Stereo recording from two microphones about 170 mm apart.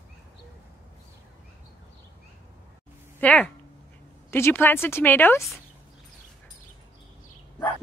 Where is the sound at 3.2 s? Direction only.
10° left (ahead or behind).